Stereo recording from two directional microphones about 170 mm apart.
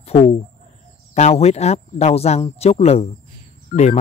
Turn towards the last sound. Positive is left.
turn(degrees=60)  # may be behind; listen again after turning